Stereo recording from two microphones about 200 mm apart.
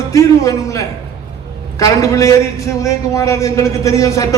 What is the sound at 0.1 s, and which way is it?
A man's voice, 15° left (ahead or behind).